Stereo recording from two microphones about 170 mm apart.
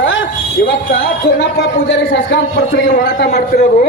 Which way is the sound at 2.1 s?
75° left (ahead or behind).